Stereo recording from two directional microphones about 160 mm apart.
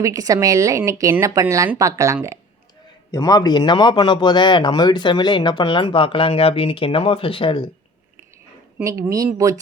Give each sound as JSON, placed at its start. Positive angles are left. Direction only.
{"t": 0.0, "sound": "a woman's voice", "side_deg": -20}
{"t": 3.1, "sound": "a man's voice", "side_deg": 20}
{"t": 8.8, "sound": "a woman's voice", "side_deg": -20}